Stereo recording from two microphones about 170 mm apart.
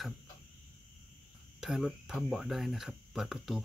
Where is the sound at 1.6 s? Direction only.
Centre (ahead or behind).